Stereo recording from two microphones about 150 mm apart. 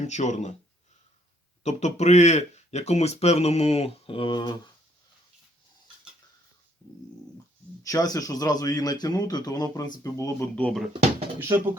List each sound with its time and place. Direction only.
0.0 s speech: 50° left (ahead or behind)
1.6 s speech: 50° left (ahead or behind); by 4.7 s 30° left (ahead or behind)
7.9 s speech: 25° left (ahead or behind)
10.5 s speech: 5° left (ahead or behind)
11.3 s speech: 15° right (ahead or behind)